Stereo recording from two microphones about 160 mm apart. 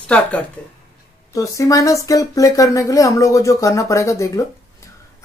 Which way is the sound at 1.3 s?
20° left (ahead or behind).